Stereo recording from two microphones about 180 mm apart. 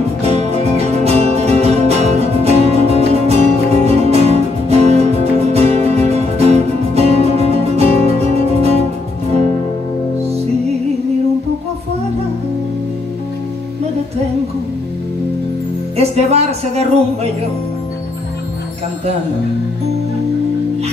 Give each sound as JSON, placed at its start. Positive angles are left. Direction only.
{"t": 0.2, "sound": "music", "side_deg": -35}
{"t": 16.0, "sound": "music", "side_deg": -35}